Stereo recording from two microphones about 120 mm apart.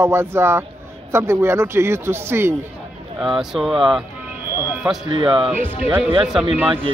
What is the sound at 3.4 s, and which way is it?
Speech, centre (ahead or behind).